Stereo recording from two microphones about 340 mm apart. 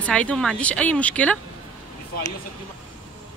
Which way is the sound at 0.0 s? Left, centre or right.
Centre.